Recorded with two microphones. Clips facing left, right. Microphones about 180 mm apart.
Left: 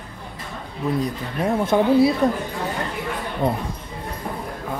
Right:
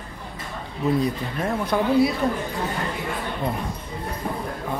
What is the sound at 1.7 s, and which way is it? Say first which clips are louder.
Speech: left 4 dB; 20° left (ahead or behind).